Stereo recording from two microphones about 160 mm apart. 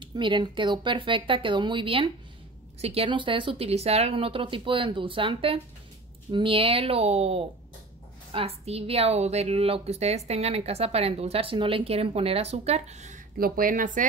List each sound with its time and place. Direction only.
0.0 s a woman's voice: 30° right (ahead or behind); by 13.2 s 45° right (ahead or behind)
13.4 s a woman's voice: 60° right (ahead or behind)